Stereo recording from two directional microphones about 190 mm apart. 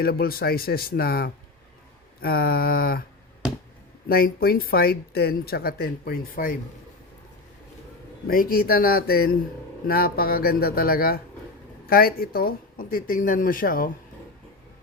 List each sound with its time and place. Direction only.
0.0 s speech: 55° left (ahead or behind)
4.1 s speech: 50° left (ahead or behind)
8.3 s speech: 50° left (ahead or behind)